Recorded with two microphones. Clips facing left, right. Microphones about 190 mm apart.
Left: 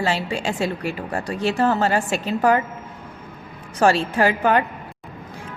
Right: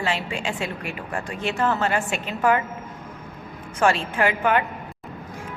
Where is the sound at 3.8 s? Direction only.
35° left (ahead or behind).